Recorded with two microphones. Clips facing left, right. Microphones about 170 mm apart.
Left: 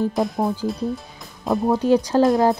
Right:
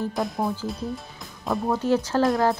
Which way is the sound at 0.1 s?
Centre (ahead or behind).